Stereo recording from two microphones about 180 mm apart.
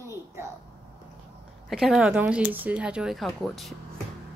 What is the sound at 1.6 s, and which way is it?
Speech, centre (ahead or behind).